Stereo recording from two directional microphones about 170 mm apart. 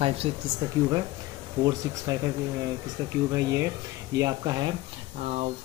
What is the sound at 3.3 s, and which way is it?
Speech, 15° right (ahead or behind).